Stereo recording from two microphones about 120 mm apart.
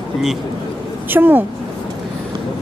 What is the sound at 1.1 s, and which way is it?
Speech, 15° right (ahead or behind).